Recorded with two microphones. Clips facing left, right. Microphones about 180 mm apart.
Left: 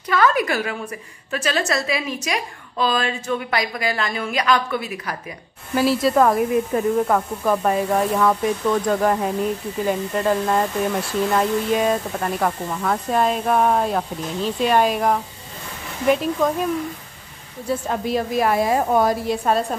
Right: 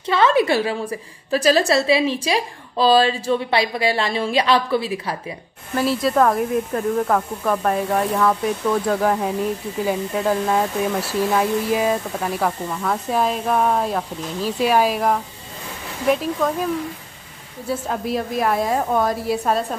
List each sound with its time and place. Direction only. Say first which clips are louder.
0.0 s a woman's voice: right 2 dB; 25° right (ahead or behind)
5.8 s speech: left 1 dB; centre (ahead or behind)
17.6 s speech: left 1 dB; centre (ahead or behind)
19.2 s speech: even; 5° right (ahead or behind)